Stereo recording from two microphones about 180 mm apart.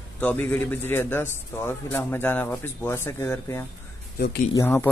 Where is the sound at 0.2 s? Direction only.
10° left (ahead or behind).